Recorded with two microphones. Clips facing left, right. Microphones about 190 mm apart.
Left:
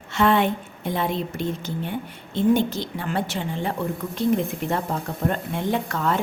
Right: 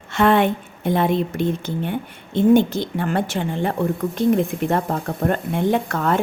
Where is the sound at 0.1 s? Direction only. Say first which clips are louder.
Right 3 dB; 55° right (ahead or behind).